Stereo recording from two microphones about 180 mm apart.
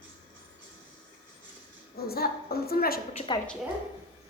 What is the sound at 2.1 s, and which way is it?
Speech, 60° left (ahead or behind).